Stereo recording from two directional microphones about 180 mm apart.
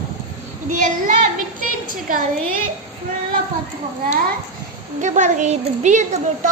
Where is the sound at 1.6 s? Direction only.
50° right (ahead or behind).